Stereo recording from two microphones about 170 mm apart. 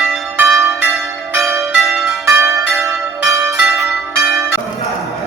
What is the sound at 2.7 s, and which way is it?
Change ringing, centre (ahead or behind).